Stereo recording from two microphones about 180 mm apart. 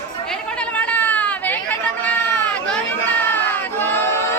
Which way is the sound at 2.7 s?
10° left (ahead or behind).